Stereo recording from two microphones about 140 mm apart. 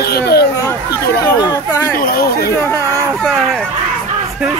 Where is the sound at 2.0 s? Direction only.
90° left.